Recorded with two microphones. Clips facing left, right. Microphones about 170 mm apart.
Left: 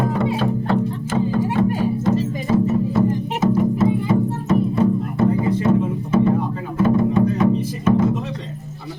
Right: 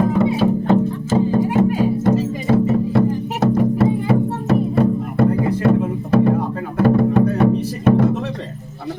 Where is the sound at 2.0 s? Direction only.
65° right (ahead or behind).